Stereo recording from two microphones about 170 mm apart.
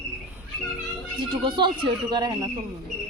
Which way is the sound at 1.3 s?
30° right (ahead or behind).